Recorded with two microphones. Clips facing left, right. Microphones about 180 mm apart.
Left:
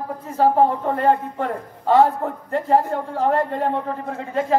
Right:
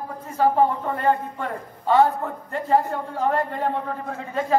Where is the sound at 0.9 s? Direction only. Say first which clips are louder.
Left 3 dB; 45° left (ahead or behind).